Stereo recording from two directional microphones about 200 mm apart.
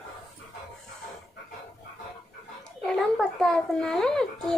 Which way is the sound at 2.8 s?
Centre (ahead or behind).